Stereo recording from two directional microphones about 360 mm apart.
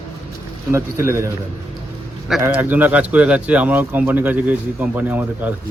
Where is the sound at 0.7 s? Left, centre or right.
Centre.